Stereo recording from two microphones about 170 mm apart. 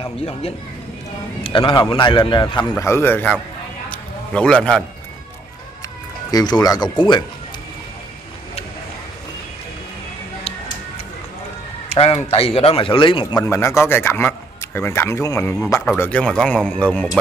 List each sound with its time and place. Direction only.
1.4 s a man's voice: 30° left (ahead or behind)
2.7 s a man's voice: 15° left (ahead or behind)
3.9 s a sound: 5° left (ahead or behind)
6.3 s a man's voice: 25° left (ahead or behind)
11.9 s a man's voice: 35° left (ahead or behind); by 17.2 s 5° left (ahead or behind)